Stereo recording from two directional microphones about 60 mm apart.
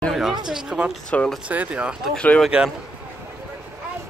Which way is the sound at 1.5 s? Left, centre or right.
Right.